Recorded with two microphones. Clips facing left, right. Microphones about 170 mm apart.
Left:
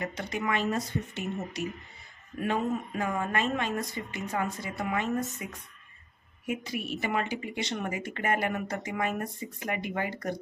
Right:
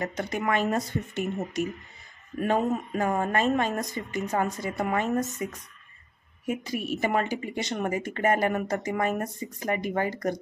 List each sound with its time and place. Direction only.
0.0 s speech: 45° right (ahead or behind)